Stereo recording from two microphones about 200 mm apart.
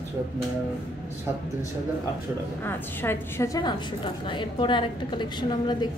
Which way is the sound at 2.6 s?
10° left (ahead or behind).